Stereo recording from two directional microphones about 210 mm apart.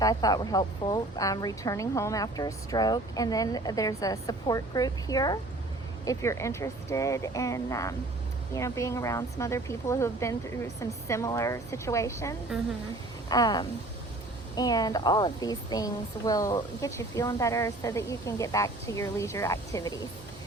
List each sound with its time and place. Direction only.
0.0 s a woman's voice: 15° left (ahead or behind)
13.2 s a sound: 20° left (ahead or behind)
14.5 s a woman's voice: 20° left (ahead or behind)